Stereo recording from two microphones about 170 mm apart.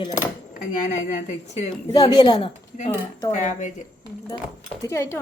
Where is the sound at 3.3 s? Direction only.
45° left (ahead or behind).